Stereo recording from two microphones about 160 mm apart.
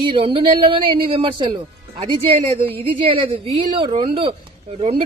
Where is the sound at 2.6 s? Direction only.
35° right (ahead or behind).